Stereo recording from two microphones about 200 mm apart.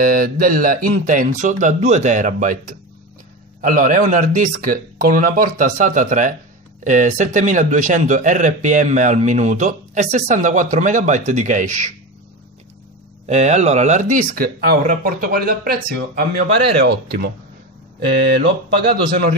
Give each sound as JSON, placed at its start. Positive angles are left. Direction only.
{"t": 0.0, "sound": "speech", "side_deg": -45}
{"t": 13.3, "sound": "speech", "side_deg": -35}
{"t": 18.4, "sound": "speech", "side_deg": -50}